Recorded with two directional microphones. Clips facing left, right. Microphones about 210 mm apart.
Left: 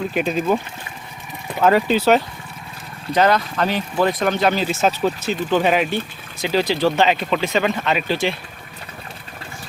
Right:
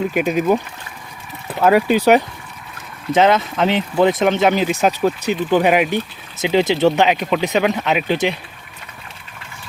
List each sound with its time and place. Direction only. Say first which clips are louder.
0.1 s speech: right 3 dB; 10° right (ahead or behind)